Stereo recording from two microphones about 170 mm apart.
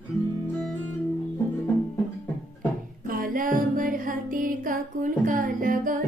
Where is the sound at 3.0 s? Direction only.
55° right (ahead or behind).